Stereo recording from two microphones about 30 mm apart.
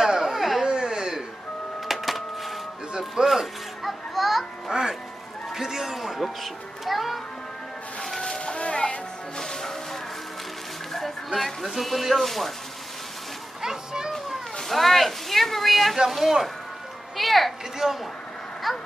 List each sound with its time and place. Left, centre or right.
0.0 s a sound: centre
1.9 s printer: centre
3.3 s music: centre
4.6 s music: centre
8.4 s music: left
9.4 s music: centre
10.9 s a sound: centre
11.7 s speech: centre
13.6 s a sound: centre
14.3 s cat: centre
16.1 s speech: centre
17.8 s speech: centre
18.7 s a sound: centre